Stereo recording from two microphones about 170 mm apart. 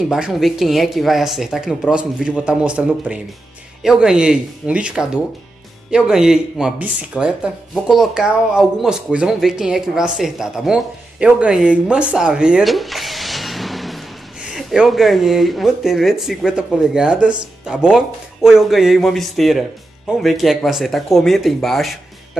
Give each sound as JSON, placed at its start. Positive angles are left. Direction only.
{"t": 0.1, "sound": "speech", "side_deg": 0}